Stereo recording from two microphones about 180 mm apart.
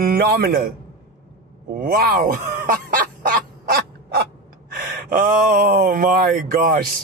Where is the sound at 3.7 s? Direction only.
60° right (ahead or behind).